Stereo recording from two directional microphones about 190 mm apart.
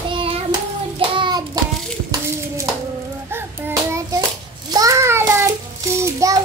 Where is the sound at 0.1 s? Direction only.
25° right (ahead or behind).